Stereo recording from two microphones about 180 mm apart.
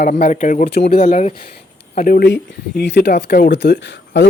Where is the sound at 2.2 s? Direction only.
65° left (ahead or behind).